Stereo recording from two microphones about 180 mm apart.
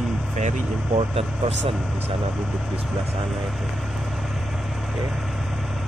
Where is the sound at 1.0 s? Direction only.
35° right (ahead or behind).